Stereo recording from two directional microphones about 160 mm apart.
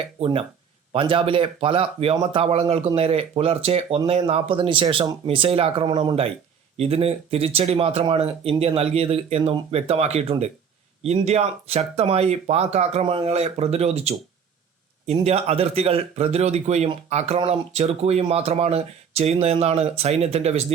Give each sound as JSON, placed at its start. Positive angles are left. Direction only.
{"t": 0.0, "sound": "speech", "side_deg": -35}